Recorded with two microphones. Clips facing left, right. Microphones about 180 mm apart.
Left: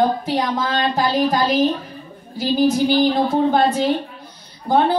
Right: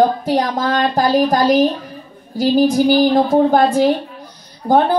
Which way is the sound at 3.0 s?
45° right (ahead or behind).